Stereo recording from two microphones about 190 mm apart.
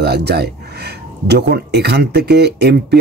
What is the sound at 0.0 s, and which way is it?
Speech, 60° right (ahead or behind).